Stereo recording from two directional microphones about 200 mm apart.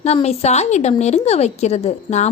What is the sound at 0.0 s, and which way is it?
A woman's voice, 30° left (ahead or behind).